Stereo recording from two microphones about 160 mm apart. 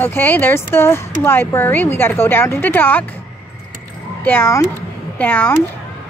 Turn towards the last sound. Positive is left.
turn(degrees=10)  # may be behind; listen again after turning